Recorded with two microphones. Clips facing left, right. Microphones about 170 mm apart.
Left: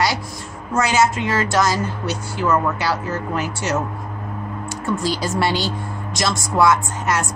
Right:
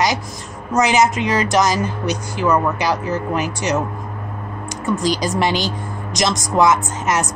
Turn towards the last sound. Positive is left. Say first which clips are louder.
# right 2 dB
turn(degrees=-20)  # may be behind; listen again after turning